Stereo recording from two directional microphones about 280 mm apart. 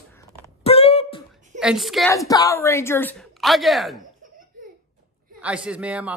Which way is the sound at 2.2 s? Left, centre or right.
Centre.